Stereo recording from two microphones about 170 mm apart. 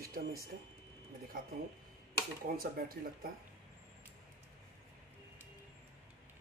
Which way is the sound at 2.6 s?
60° right (ahead or behind).